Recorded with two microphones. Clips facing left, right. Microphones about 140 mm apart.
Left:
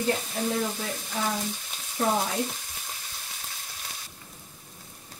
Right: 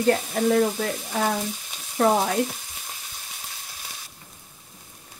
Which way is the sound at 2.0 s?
65° right (ahead or behind).